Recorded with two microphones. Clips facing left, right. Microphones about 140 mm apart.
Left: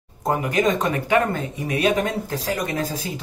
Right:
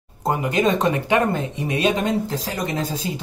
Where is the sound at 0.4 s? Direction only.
25° right (ahead or behind).